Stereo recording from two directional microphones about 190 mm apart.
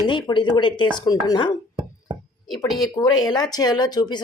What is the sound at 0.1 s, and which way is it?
Speech, 25° left (ahead or behind).